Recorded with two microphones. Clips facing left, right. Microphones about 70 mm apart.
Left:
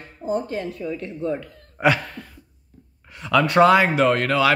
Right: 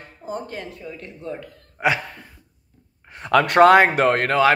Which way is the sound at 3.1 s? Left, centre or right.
Right.